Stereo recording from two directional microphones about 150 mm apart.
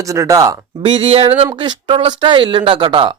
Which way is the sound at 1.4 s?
30° right (ahead or behind).